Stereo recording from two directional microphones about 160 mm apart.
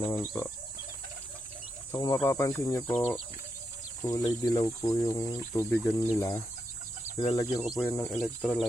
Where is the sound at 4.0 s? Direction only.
20° left (ahead or behind).